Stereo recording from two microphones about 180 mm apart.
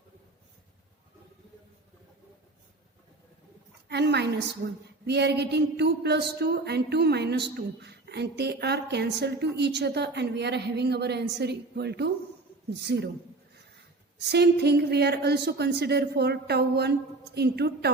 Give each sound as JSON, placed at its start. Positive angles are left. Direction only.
{"t": 3.8, "sound": "a woman's voice", "side_deg": -70}
{"t": 5.0, "sound": "a sound", "side_deg": -70}
{"t": 14.2, "sound": "a woman's voice", "side_deg": -65}